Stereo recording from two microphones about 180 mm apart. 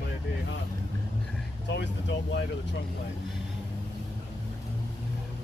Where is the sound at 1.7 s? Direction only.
75° left (ahead or behind).